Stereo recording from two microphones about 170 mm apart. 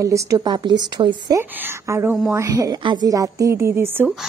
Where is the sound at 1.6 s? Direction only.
15° right (ahead or behind).